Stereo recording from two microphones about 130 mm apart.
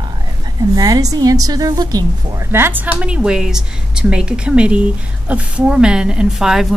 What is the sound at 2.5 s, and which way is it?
A woman's voice, 15° right (ahead or behind).